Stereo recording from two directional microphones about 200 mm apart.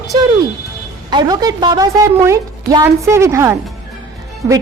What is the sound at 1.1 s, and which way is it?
A woman's voice, 20° right (ahead or behind).